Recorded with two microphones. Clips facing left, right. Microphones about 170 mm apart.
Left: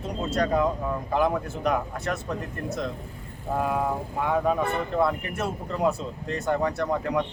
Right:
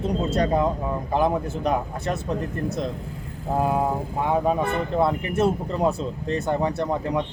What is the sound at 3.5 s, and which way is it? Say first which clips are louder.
Speech: right 3 dB; 25° right (ahead or behind).